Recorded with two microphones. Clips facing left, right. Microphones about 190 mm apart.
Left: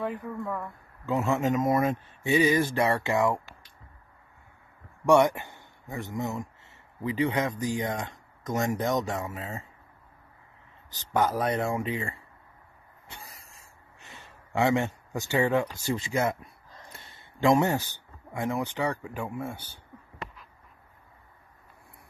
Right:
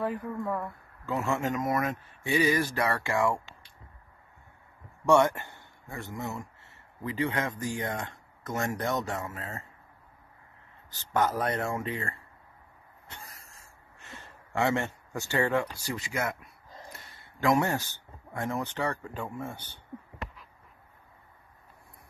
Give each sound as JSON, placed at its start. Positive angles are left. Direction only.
{"t": 0.0, "sound": "speech", "side_deg": 0}
{"t": 1.0, "sound": "speech", "side_deg": 20}
{"t": 5.0, "sound": "a man's voice", "side_deg": 15}
{"t": 11.0, "sound": "speech", "side_deg": 15}
{"t": 13.1, "sound": "a sound", "side_deg": 10}
{"t": 13.9, "sound": "speech", "side_deg": 15}